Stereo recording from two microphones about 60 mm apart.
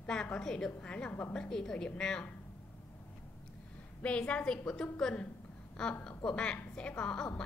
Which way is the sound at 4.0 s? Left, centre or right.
Centre.